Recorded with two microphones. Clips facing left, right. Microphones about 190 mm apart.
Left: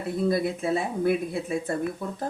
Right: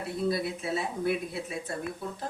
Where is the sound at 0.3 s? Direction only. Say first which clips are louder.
Left 5 dB; 50° left (ahead or behind).